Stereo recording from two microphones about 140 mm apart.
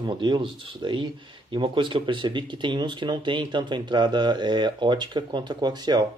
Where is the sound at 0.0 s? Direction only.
35° right (ahead or behind).